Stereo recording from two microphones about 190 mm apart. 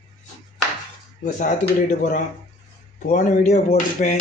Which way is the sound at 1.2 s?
40° left (ahead or behind).